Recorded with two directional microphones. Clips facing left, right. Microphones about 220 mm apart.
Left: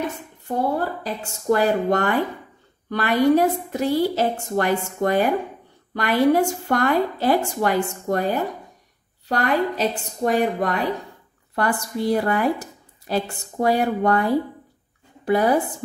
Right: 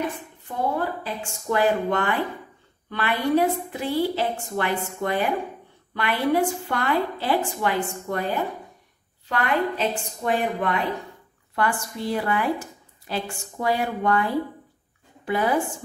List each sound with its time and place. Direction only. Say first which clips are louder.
0.5 s a woman's voice: left 3 dB; 40° left (ahead or behind)